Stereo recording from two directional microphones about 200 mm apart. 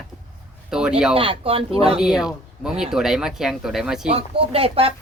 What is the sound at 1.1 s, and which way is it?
Speech, 30° right (ahead or behind).